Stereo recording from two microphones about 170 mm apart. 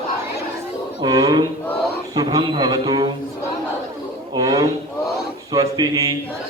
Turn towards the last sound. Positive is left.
turn(degrees=-20)  # may be behind; listen again after turning